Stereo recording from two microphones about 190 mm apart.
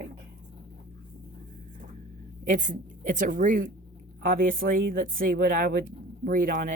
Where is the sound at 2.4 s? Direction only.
45° right (ahead or behind).